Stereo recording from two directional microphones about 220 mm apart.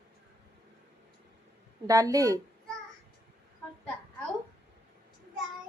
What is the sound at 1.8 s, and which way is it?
Speech, 15° right (ahead or behind).